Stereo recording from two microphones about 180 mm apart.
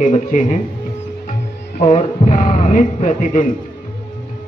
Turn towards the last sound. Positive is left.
turn(degrees=45)  # may be behind; listen again after turning